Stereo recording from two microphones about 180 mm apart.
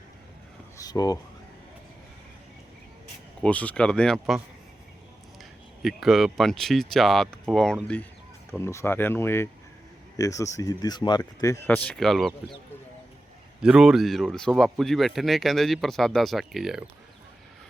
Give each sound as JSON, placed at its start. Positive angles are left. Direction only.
{"t": 0.8, "sound": "speech", "side_deg": 20}
{"t": 3.4, "sound": "speech", "side_deg": 10}
{"t": 5.4, "sound": "speech", "side_deg": 0}
{"t": 8.5, "sound": "speech", "side_deg": 15}
{"t": 13.6, "sound": "speech", "side_deg": -5}